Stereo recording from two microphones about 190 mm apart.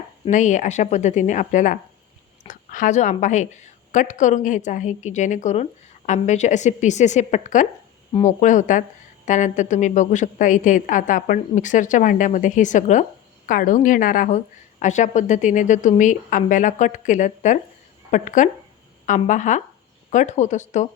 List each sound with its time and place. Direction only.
0.3 s a woman's voice: 40° left (ahead or behind)